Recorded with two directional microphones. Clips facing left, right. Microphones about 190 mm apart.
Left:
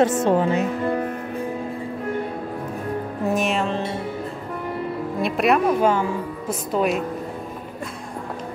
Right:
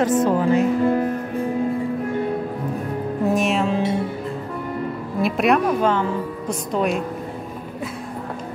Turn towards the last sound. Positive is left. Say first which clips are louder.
# even
turn(degrees=5)  # may be behind; listen again after turning